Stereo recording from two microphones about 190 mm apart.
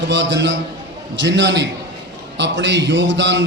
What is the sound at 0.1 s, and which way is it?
A man's voice, 70° right (ahead or behind).